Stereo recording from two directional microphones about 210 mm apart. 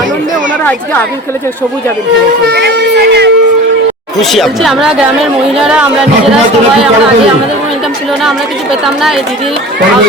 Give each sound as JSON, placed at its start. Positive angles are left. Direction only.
{"t": 2.5, "sound": "speech", "side_deg": -50}
{"t": 4.2, "sound": "a woman's voice", "side_deg": 0}